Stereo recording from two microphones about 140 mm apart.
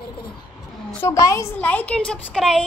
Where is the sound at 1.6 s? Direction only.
10° left (ahead or behind).